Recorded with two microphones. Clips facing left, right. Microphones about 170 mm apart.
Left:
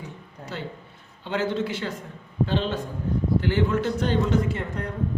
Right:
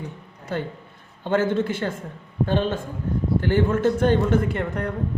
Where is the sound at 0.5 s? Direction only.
50° right (ahead or behind).